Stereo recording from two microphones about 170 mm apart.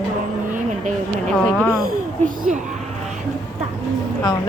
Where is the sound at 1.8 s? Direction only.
50° right (ahead or behind).